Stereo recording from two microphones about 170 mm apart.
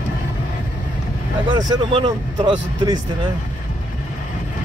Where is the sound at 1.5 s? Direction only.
30° right (ahead or behind).